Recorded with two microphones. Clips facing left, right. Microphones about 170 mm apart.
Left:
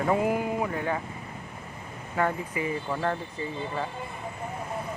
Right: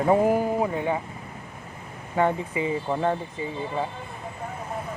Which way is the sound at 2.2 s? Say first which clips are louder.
Right 4 dB; 20° right (ahead or behind).